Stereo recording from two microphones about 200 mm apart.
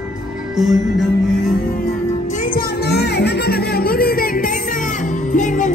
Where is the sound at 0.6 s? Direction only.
Centre (ahead or behind).